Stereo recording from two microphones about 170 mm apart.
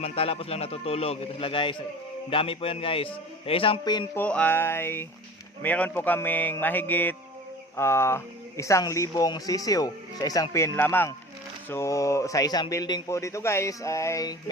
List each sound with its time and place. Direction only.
0.0 s a man's voice: 35° left (ahead or behind)
4.1 s speech: 10° left (ahead or behind)